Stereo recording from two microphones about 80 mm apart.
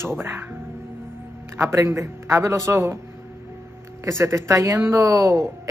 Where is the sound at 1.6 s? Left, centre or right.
Right.